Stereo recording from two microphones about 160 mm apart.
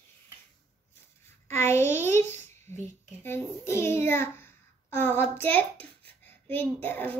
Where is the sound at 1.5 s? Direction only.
15° left (ahead or behind).